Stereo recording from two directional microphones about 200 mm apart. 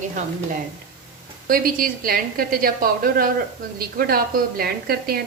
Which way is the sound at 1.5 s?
45° right (ahead or behind).